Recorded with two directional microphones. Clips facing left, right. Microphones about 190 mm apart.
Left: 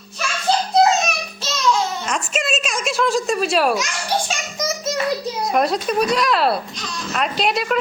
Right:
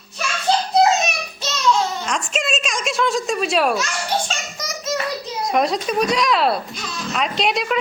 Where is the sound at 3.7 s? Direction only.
15° left (ahead or behind).